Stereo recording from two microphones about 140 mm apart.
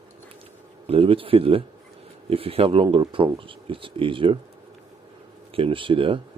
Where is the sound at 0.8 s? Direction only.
40° right (ahead or behind).